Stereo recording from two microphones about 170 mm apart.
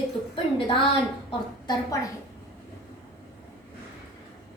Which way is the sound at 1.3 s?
25° left (ahead or behind).